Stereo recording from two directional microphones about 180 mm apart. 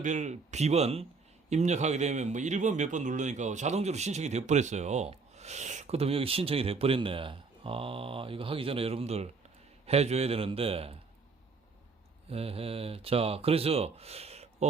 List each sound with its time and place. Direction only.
0.0 s a man's voice: 40° right (ahead or behind)
12.3 s a man's voice: 35° right (ahead or behind)